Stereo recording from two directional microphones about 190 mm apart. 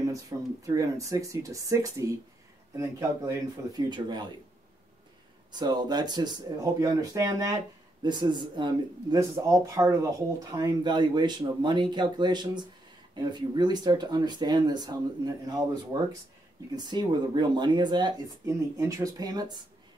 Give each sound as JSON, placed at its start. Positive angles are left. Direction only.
{"t": 0.0, "sound": "speech", "side_deg": -15}
{"t": 5.5, "sound": "speech", "side_deg": -20}